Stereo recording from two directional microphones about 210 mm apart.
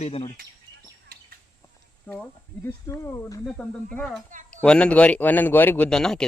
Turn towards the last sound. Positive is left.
turn(degrees=5)  # may be behind; listen again after turning